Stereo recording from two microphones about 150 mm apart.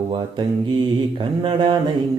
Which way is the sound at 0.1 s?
35° right (ahead or behind).